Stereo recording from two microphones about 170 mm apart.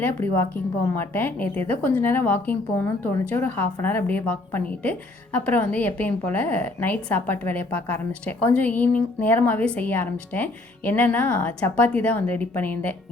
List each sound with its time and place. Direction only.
0.0 s a woman's voice: 10° left (ahead or behind)